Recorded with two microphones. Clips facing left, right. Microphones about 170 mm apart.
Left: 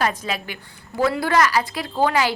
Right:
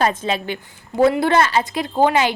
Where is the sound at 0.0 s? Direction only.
25° right (ahead or behind).